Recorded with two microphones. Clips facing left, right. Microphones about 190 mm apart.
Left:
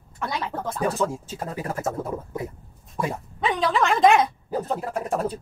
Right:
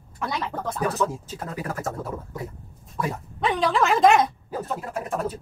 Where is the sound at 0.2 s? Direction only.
Centre (ahead or behind).